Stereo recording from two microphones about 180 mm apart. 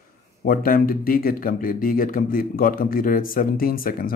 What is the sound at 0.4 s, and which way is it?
Speech, 50° left (ahead or behind).